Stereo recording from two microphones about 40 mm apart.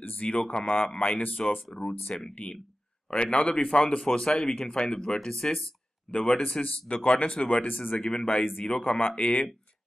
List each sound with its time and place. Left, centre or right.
0.0 s a sound: left
0.5 s a man's voice: left
6.6 s speech: left
7.6 s speech: left
8.0 s a man's voice: centre
8.6 s speech: left